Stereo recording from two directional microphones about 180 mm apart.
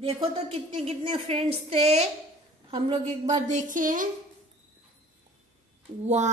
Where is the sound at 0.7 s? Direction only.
30° right (ahead or behind); by 4.1 s 45° right (ahead or behind).